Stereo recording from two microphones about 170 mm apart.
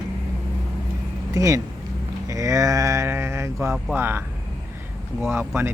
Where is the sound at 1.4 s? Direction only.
20° right (ahead or behind).